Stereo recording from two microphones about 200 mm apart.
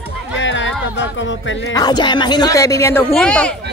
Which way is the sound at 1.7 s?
20° left (ahead or behind).